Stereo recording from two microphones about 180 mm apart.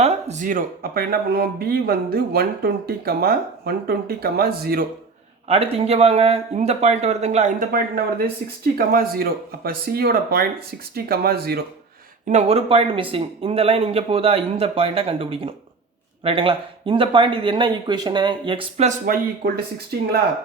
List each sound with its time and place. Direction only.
0.0 s speech: 40° right (ahead or behind); by 4.9 s 55° right (ahead or behind)
5.5 s speech: 35° right (ahead or behind); by 11.6 s 60° right (ahead or behind)
12.3 s speech: 35° right (ahead or behind)
18.9 s speech: 55° right (ahead or behind)